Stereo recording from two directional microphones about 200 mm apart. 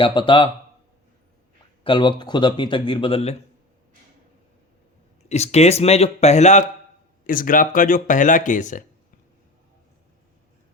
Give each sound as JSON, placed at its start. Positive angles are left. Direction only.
{"t": 0.0, "sound": "a man's voice", "side_deg": 25}
{"t": 1.8, "sound": "a man's voice", "side_deg": 25}
{"t": 5.3, "sound": "speech", "side_deg": 35}